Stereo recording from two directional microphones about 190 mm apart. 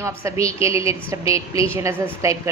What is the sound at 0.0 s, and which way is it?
Speech, 15° right (ahead or behind).